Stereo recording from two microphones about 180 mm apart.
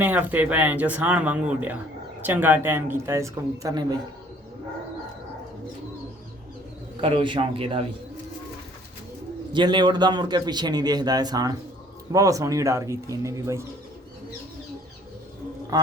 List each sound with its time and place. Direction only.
0.0 s speech: 10° right (ahead or behind)
7.0 s a man's voice: 30° right (ahead or behind)
9.5 s a man's voice: 25° right (ahead or behind)
15.7 s a man's voice: 20° right (ahead or behind)